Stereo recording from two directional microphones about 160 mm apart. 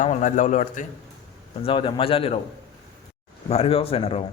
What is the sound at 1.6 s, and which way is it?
Speech, 35° left (ahead or behind).